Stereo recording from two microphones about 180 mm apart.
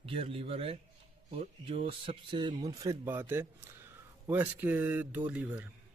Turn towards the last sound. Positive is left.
turn(degrees=-10)  # may be behind; listen again after turning